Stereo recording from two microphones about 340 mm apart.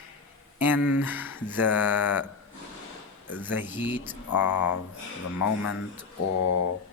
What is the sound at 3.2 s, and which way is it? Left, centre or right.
Speech, centre.